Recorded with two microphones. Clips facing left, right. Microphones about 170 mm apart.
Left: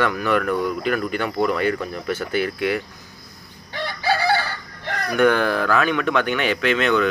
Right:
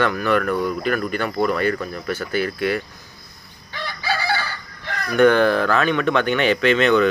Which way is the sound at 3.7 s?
55° left (ahead or behind).